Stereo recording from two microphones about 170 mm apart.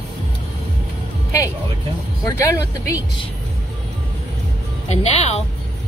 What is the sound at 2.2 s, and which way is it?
Speech, 15° left (ahead or behind).